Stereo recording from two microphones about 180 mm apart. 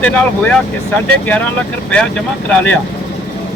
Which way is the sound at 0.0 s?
10° left (ahead or behind).